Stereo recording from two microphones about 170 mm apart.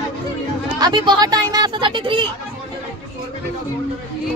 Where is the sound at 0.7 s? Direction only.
25° right (ahead or behind).